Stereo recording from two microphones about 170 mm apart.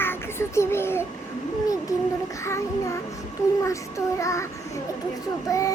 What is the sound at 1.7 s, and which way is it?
Child singing, 20° left (ahead or behind).